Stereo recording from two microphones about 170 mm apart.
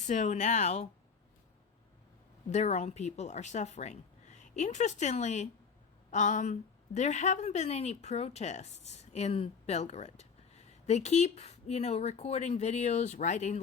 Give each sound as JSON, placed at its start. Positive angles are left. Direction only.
{"t": 0.0, "sound": "speech", "side_deg": 45}
{"t": 2.5, "sound": "a woman's voice", "side_deg": 40}